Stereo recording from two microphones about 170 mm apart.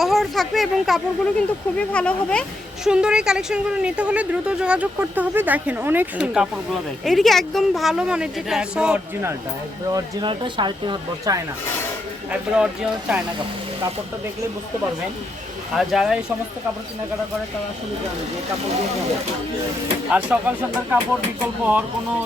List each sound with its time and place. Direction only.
0.0 s speech: centre (ahead or behind)
2.8 s speech: 5° right (ahead or behind)
9.9 s speech: 25° right (ahead or behind)
12.3 s speech: 5° right (ahead or behind)
15.7 s speech: centre (ahead or behind)
20.1 s speech: 10° right (ahead or behind)